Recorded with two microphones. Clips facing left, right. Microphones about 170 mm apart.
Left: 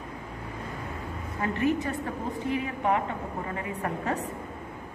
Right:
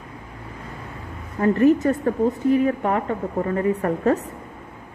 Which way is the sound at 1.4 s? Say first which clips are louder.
Right 10 dB; 45° right (ahead or behind).